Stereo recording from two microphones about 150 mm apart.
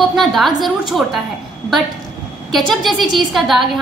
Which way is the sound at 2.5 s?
Centre (ahead or behind).